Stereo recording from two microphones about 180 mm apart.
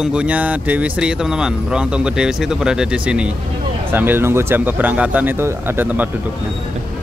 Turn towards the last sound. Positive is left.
turn(degrees=-10)  # may be behind; listen again after turning